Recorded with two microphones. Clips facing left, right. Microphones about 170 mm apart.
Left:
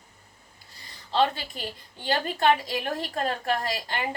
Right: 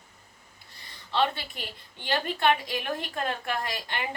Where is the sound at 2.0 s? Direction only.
35° left (ahead or behind).